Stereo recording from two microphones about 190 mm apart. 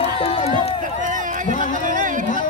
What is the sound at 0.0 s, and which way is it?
Run, 30° left (ahead or behind).